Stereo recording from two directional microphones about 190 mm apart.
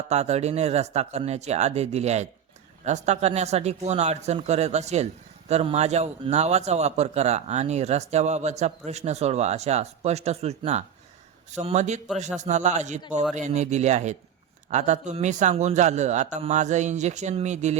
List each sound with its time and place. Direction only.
0.1 s a man's voice: 35° right (ahead or behind)